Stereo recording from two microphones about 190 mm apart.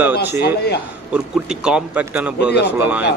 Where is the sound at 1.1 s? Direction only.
5° right (ahead or behind).